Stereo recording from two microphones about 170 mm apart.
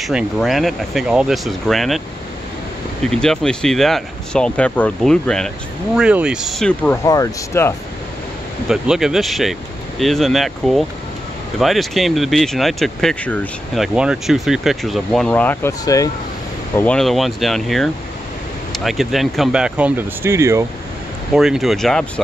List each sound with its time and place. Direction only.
0.0 s speech: centre (ahead or behind)
3.0 s speech: 5° left (ahead or behind)
7.1 s speech: 15° left (ahead or behind)
8.6 s speech: centre (ahead or behind)
13.7 s speech: 5° right (ahead or behind)
15.8 s speech: 20° left (ahead or behind)
16.7 s speech: 5° left (ahead or behind); by 20.6 s 15° right (ahead or behind)
21.4 s speech: centre (ahead or behind)